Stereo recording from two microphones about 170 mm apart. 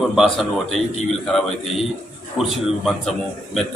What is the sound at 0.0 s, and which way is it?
A man's voice, centre (ahead or behind).